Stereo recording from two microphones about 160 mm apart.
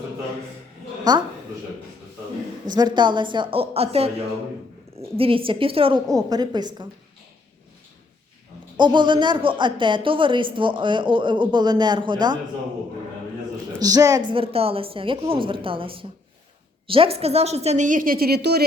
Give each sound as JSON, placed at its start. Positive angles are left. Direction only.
{"t": 1.1, "sound": "a woman's voice", "side_deg": -25}
{"t": 2.6, "sound": "a woman's voice", "side_deg": -25}
{"t": 6.1, "sound": "a woman's voice", "side_deg": -25}
{"t": 8.8, "sound": "speech", "side_deg": -30}
{"t": 13.7, "sound": "a woman's voice", "side_deg": -20}